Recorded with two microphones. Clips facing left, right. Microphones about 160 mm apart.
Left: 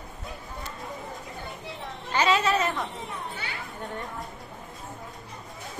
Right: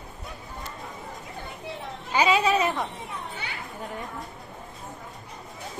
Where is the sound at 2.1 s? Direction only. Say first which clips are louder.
Right 2 dB; 10° right (ahead or behind).